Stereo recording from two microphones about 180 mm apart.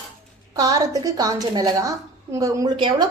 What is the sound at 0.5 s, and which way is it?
A woman's voice, 20° right (ahead or behind).